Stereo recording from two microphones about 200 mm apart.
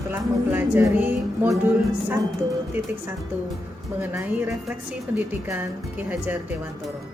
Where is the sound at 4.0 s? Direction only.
10° right (ahead or behind).